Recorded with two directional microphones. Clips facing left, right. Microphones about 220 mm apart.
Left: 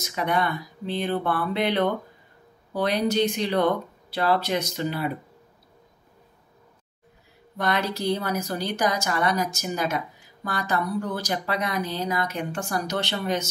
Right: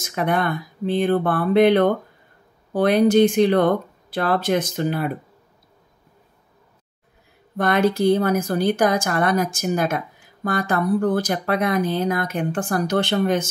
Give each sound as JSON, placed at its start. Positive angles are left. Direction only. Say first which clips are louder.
{"t": 0.0, "sound": "speech", "louder": "right 3 dB", "side_deg": -50}
{"t": 7.5, "sound": "speech", "louder": "right 7 dB", "side_deg": -50}